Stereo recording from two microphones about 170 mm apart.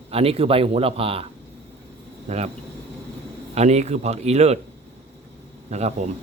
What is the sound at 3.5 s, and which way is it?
Speech, 40° right (ahead or behind).